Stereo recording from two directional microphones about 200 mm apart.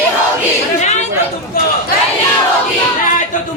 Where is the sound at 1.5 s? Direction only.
50° left (ahead or behind).